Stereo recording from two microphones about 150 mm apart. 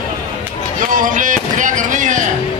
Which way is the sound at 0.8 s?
60° right (ahead or behind).